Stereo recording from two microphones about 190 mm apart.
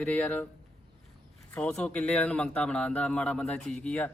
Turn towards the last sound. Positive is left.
turn(degrees=10)  # may be behind; listen again after turning